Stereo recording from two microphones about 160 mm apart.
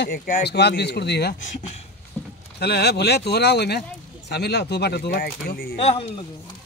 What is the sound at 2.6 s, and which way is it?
A man's voice, 90° left.